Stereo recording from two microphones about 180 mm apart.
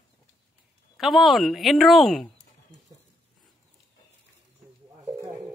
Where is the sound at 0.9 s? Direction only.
Centre (ahead or behind).